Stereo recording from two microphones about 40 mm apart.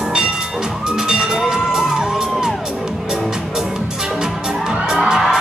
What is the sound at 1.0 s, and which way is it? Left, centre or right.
Music, centre.